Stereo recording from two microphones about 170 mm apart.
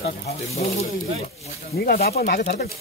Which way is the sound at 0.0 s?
35° left (ahead or behind).